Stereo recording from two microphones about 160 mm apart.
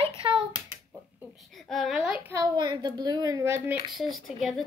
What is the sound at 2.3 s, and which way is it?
A child's voice, 20° right (ahead or behind).